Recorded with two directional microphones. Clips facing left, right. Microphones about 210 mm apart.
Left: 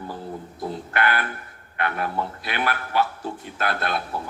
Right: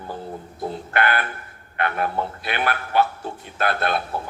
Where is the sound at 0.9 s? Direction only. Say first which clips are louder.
Right 2 dB; 55° right (ahead or behind).